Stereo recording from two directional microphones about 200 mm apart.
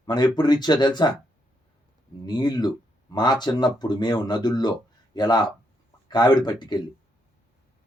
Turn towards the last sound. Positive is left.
turn(degrees=20)  # may be behind; listen again after turning